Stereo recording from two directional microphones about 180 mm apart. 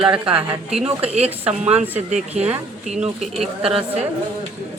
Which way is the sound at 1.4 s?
35° right (ahead or behind).